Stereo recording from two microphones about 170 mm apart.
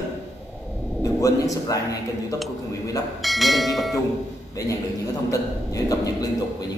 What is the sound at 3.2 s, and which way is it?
Speech, centre (ahead or behind).